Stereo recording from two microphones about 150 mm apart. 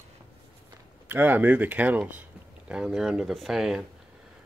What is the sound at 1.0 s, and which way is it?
Speech, 15° right (ahead or behind).